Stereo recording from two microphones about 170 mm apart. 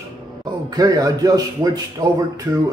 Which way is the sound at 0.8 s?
25° right (ahead or behind).